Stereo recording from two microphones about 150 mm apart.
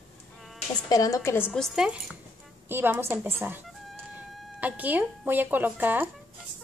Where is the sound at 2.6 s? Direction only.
15° right (ahead or behind).